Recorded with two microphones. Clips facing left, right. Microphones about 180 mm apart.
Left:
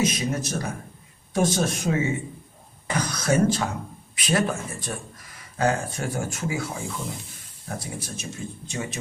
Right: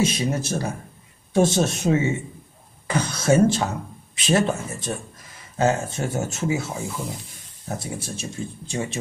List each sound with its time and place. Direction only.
0.0 s a man's voice: 25° right (ahead or behind)